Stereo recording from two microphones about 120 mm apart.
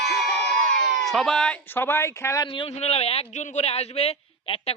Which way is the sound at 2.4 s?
45° left (ahead or behind).